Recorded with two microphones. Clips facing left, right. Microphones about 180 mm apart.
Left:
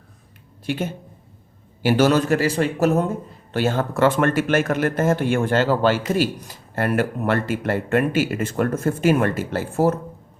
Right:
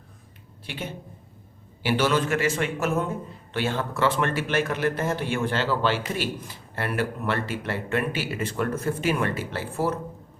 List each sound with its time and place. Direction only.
0.6 s a man's voice: 45° left (ahead or behind)